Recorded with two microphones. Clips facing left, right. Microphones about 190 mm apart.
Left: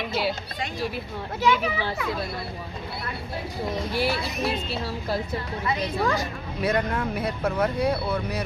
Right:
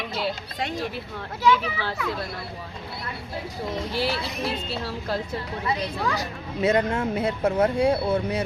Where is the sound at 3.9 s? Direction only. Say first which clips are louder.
Left 1 dB; 15° left (ahead or behind).